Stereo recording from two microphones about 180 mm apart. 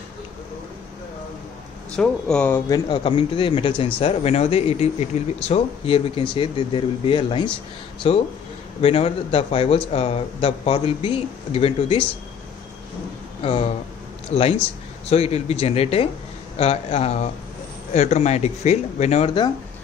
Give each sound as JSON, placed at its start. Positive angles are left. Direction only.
{"t": 2.0, "sound": "speech", "side_deg": 5}
{"t": 3.0, "sound": "a man's voice", "side_deg": 30}
{"t": 13.4, "sound": "a man's voice", "side_deg": 35}